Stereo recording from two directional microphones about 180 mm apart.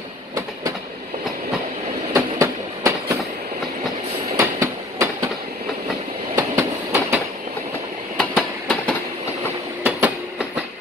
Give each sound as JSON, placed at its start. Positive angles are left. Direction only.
{"t": 2.1, "sound": "train", "side_deg": -15}
{"t": 4.4, "sound": "train", "side_deg": -15}
{"t": 6.3, "sound": "train", "side_deg": -15}
{"t": 8.2, "sound": "train", "side_deg": 5}
{"t": 9.8, "sound": "train", "side_deg": -10}